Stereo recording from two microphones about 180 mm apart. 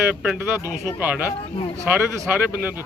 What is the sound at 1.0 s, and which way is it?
Speech, 10° right (ahead or behind).